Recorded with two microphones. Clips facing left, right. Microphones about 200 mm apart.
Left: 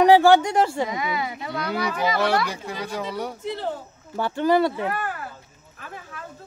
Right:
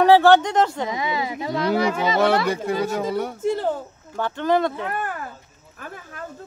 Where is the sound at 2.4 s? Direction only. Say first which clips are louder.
Right 8 dB; 55° right (ahead or behind).